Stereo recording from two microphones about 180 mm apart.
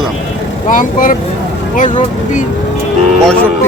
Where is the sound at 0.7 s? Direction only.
50° left (ahead or behind).